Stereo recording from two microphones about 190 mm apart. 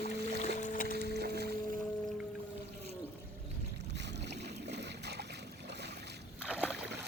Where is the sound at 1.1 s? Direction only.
60° right (ahead or behind).